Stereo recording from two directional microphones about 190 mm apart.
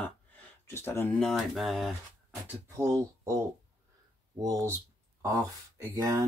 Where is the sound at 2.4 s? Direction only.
15° right (ahead or behind).